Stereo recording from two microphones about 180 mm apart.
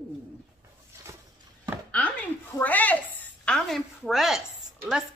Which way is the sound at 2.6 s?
10° left (ahead or behind).